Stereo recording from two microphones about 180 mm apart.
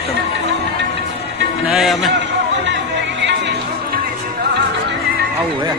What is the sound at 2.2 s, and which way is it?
Music, 80° right.